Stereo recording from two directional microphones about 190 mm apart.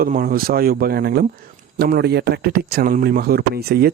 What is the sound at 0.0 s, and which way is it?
Speech, 45° right (ahead or behind).